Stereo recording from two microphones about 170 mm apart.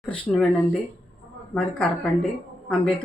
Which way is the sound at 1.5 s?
5° left (ahead or behind).